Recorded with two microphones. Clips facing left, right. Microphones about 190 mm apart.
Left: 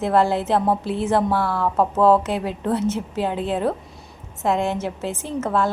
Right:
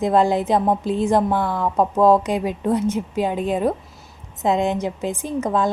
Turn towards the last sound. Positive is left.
turn(degrees=-15)  # may be behind; listen again after turning